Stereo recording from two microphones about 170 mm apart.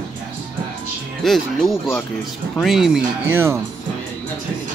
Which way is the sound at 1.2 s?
Centre (ahead or behind).